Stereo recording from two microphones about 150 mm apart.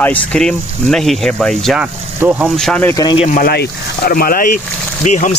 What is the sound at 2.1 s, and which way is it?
Speech, 15° right (ahead or behind).